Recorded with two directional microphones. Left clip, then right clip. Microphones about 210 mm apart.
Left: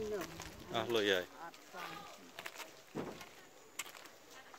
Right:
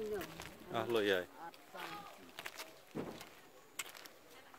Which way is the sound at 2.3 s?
5° left (ahead or behind).